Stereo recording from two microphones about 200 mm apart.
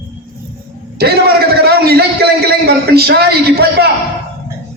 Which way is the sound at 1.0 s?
50° right (ahead or behind).